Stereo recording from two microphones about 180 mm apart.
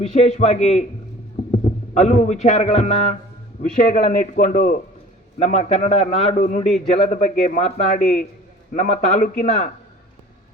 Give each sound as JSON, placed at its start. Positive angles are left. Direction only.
{"t": 0.0, "sound": "a man's voice", "side_deg": 35}
{"t": 3.6, "sound": "a man's voice", "side_deg": 50}